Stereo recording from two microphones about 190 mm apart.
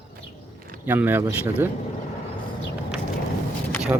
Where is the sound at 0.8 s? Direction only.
10° right (ahead or behind).